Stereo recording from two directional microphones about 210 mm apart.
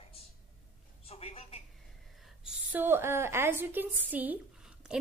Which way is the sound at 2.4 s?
10° right (ahead or behind).